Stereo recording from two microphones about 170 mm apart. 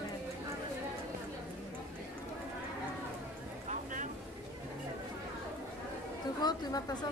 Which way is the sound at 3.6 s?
45° right (ahead or behind).